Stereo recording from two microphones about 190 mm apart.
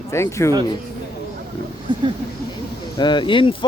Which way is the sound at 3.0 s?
25° left (ahead or behind).